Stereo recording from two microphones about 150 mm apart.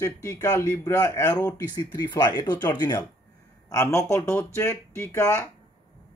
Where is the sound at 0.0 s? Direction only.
20° left (ahead or behind).